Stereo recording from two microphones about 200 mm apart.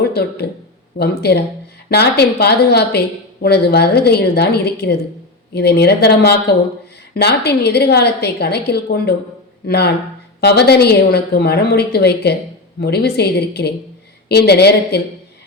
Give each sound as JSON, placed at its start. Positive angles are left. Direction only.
{"t": 0.1, "sound": "a woman's voice", "side_deg": 55}